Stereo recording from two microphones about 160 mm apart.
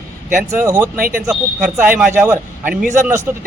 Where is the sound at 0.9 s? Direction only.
60° right (ahead or behind).